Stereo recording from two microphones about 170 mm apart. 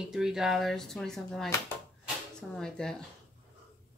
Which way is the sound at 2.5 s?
5° left (ahead or behind).